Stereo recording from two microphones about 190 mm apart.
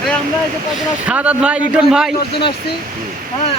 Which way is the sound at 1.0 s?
5° right (ahead or behind).